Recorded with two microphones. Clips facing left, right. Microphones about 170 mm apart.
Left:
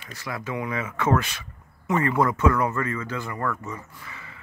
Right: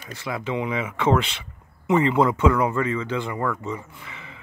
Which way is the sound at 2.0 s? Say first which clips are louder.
Right 3 dB; 25° right (ahead or behind).